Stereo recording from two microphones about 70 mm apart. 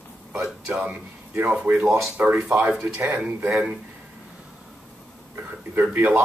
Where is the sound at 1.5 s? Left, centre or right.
Centre.